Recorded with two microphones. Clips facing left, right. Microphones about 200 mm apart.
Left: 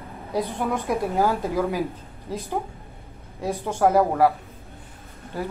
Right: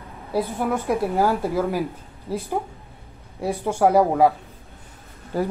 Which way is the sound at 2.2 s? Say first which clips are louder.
Right 2 dB; 10° right (ahead or behind).